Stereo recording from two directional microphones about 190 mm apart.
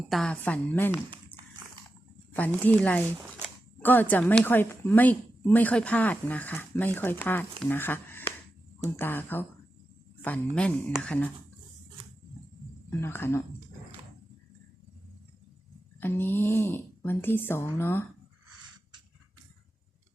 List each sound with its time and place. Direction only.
0.1 s speech: 5° left (ahead or behind)
2.3 s speech: 10° left (ahead or behind)
12.9 s speech: 10° left (ahead or behind)
16.0 s speech: 10° left (ahead or behind)